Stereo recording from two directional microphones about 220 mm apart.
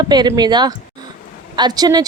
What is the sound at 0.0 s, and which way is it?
A woman's voice, 20° right (ahead or behind).